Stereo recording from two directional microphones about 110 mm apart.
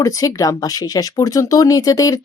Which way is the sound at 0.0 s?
30° left (ahead or behind).